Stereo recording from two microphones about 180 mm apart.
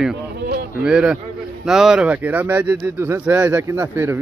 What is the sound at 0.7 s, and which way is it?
Speech, 5° right (ahead or behind).